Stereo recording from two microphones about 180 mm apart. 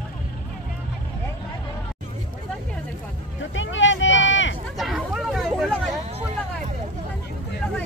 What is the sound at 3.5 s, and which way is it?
Vehicle, 90° left.